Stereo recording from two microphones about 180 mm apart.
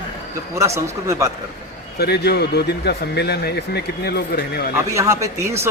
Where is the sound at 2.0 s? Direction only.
65° left (ahead or behind).